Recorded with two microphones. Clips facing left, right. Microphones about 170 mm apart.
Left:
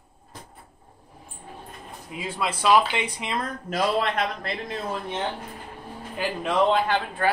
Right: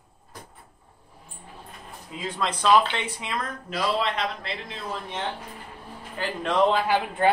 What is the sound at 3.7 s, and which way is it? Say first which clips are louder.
A man's voice: left 2 dB; 45° left (ahead or behind).